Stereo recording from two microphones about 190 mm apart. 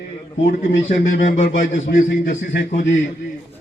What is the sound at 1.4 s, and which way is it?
Mantra, 55° left (ahead or behind).